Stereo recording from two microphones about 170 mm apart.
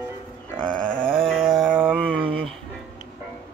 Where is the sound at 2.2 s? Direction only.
30° right (ahead or behind).